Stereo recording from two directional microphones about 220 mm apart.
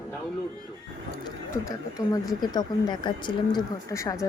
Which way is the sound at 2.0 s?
15° left (ahead or behind).